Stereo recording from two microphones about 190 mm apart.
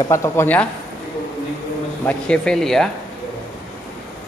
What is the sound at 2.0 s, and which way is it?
Speech, 5° left (ahead or behind).